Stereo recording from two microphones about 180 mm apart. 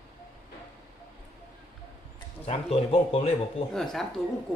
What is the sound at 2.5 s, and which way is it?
Speech, 35° left (ahead or behind).